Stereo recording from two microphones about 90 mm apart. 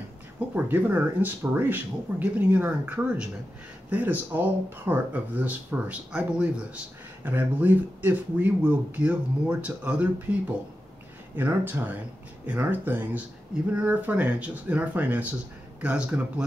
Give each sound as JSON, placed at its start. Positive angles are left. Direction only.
{"t": 0.6, "sound": "speech", "side_deg": -20}